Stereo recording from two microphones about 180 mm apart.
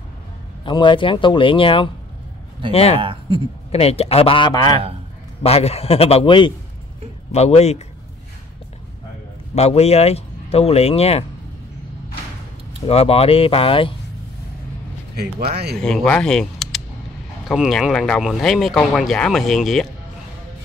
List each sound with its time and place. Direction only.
0.7 s speech: 25° left (ahead or behind)
3.0 s speech: 30° right (ahead or behind)
3.7 s speech: 35° left (ahead or behind)
5.4 s speech: 35° left (ahead or behind)
9.6 s speech: 35° left (ahead or behind)
12.8 s speech: 35° left (ahead or behind)
15.5 s speech: 60° right (ahead or behind)
15.8 s speech: 5° left (ahead or behind)